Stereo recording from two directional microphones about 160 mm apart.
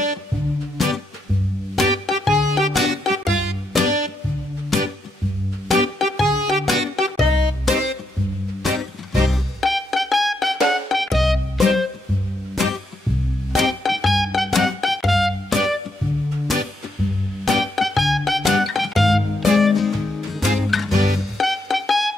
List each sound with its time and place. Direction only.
0.7 s music: centre (ahead or behind)
17.5 s music: centre (ahead or behind)